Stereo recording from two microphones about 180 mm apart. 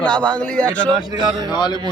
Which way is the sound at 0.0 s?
5° left (ahead or behind).